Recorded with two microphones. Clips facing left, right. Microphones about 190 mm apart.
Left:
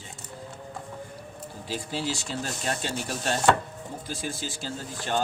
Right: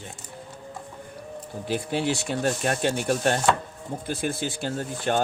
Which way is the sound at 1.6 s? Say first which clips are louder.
Right 6 dB; 60° right (ahead or behind).